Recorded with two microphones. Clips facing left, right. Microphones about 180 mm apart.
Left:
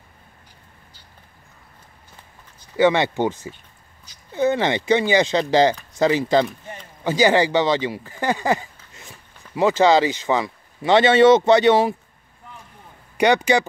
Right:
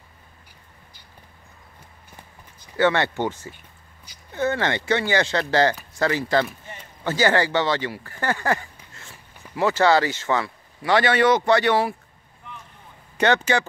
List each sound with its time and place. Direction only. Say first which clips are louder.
2.7 s speech: left 3 dB; 15° left (ahead or behind)
13.2 s speech: left 3 dB; 15° left (ahead or behind)